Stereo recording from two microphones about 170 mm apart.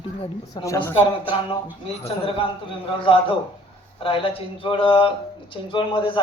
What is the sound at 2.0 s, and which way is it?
Speech, 30° left (ahead or behind).